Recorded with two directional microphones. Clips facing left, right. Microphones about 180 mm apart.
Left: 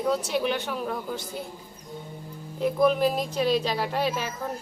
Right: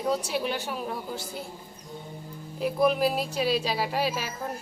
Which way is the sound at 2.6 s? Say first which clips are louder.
Left 2 dB; 10° right (ahead or behind).